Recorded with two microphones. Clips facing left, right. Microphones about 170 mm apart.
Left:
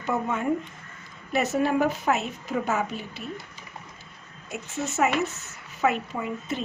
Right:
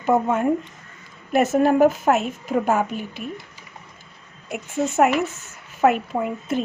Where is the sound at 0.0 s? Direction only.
50° right (ahead or behind).